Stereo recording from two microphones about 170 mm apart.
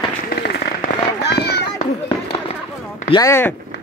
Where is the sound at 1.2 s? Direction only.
75° left (ahead or behind).